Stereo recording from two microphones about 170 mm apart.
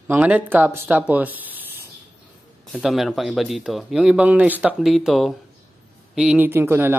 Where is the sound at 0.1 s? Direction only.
10° right (ahead or behind).